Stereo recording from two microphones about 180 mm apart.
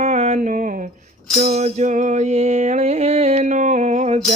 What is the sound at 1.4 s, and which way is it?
Music, 35° right (ahead or behind).